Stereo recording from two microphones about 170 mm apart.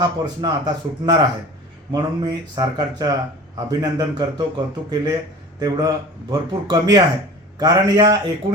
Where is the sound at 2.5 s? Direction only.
25° right (ahead or behind).